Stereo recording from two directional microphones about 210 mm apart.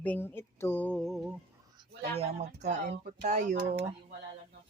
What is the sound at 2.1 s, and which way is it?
Speech, 30° right (ahead or behind).